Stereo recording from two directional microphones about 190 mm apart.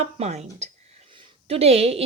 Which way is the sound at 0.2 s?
35° right (ahead or behind).